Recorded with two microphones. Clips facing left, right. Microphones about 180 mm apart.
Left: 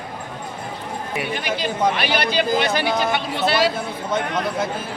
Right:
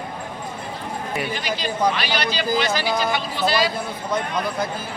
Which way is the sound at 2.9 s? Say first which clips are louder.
Left 1 dB; centre (ahead or behind).